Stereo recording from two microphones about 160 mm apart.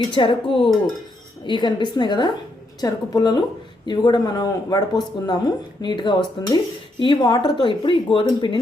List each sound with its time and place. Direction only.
0.1 s speech: 30° left (ahead or behind)